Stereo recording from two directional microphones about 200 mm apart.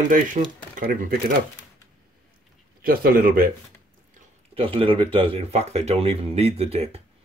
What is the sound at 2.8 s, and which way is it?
Speech, 50° right (ahead or behind).